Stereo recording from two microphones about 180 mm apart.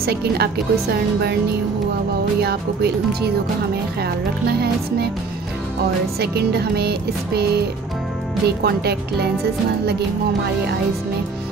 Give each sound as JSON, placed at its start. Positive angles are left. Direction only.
{"t": 0.0, "sound": "music", "side_deg": -65}
{"t": 2.4, "sound": "music", "side_deg": -60}
{"t": 6.1, "sound": "music", "side_deg": -60}